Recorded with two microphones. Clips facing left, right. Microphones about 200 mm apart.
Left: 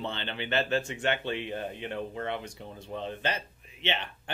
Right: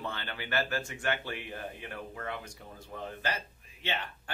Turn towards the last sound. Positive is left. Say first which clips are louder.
# left 4 dB
turn(degrees=20)  # may be behind; listen again after turning